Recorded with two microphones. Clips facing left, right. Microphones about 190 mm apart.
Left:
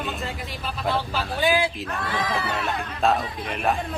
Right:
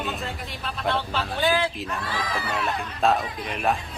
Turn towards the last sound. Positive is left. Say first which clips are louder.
# even
turn(degrees=0)  # may be behind; listen again after turning